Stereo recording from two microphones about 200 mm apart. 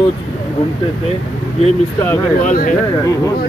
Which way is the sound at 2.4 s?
40° left (ahead or behind).